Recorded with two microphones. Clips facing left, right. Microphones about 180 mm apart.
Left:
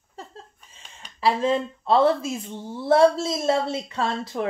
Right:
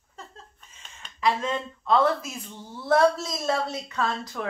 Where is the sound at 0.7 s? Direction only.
30° left (ahead or behind).